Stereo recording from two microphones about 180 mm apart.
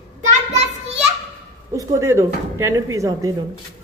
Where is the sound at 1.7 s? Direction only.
15° right (ahead or behind).